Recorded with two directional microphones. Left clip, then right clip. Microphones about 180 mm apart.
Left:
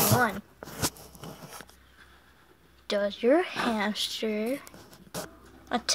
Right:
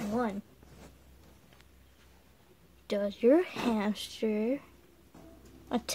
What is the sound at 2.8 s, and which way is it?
Speech, 40° right (ahead or behind).